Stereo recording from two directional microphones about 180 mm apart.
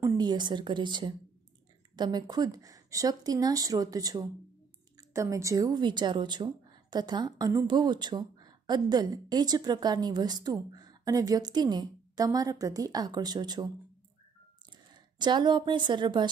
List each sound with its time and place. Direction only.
0.0 s a woman's voice: 25° right (ahead or behind)
15.1 s a woman's voice: 25° right (ahead or behind)